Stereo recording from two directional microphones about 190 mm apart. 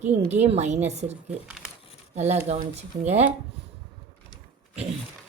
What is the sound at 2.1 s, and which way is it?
A woman's voice, 35° right (ahead or behind).